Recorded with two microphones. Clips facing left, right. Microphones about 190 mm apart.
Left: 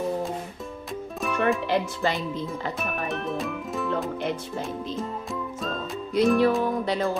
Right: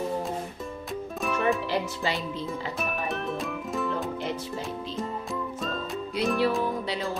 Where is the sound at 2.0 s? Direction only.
55° left (ahead or behind).